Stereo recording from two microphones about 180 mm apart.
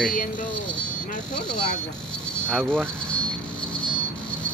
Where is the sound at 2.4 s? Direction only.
5° left (ahead or behind).